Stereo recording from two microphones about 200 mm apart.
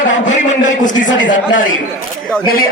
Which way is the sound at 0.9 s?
65° left (ahead or behind).